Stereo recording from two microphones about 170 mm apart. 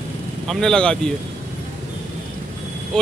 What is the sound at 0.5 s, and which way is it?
Speech, 5° left (ahead or behind).